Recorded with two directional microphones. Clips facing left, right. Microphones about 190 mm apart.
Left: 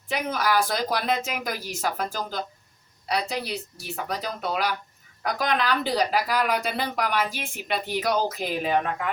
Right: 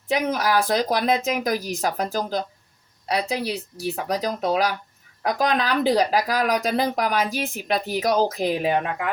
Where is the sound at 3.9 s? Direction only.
40° right (ahead or behind).